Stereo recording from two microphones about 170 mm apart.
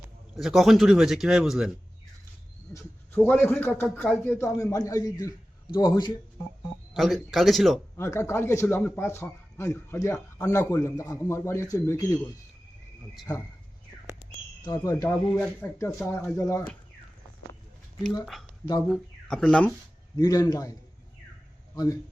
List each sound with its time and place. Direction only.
0.3 s a man's voice: centre (ahead or behind)
2.7 s a man's voice: 10° left (ahead or behind)
4.4 s a man's voice: 15° left (ahead or behind)
6.9 s a man's voice: centre (ahead or behind)
7.9 s speech: 15° left (ahead or behind)
14.6 s a man's voice: 20° left (ahead or behind)
15.3 s speech: 5° left (ahead or behind)
18.9 s speech: 5° left (ahead or behind)
20.1 s a man's voice: 20° left (ahead or behind)